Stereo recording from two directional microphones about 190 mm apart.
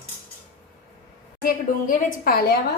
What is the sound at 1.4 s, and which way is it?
A woman's voice, 45° left (ahead or behind).